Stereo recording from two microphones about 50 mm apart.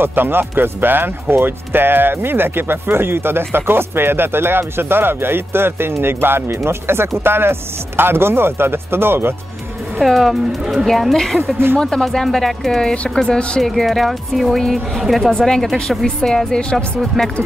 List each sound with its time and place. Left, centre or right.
0.0 s speech: right
9.9 s speech: centre
10.6 s speech: centre
10.9 s speech: centre